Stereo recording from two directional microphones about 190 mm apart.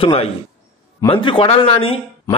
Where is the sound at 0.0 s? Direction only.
30° left (ahead or behind).